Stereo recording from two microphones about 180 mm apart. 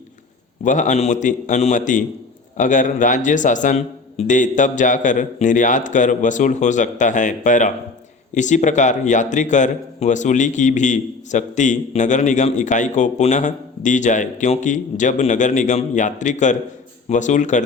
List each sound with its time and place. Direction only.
0.6 s a man's voice: 45° left (ahead or behind)